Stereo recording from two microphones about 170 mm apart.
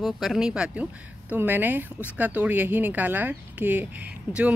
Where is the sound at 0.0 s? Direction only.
Centre (ahead or behind).